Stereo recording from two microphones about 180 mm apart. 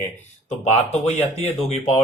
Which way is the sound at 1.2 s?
35° left (ahead or behind).